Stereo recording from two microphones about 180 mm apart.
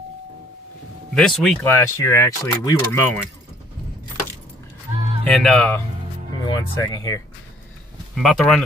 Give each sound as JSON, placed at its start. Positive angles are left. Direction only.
{"t": 1.1, "sound": "speech", "side_deg": 5}
{"t": 1.6, "sound": "speech", "side_deg": 15}
{"t": 5.2, "sound": "speech", "side_deg": 0}
{"t": 6.4, "sound": "speech", "side_deg": 20}
{"t": 8.1, "sound": "speech", "side_deg": 0}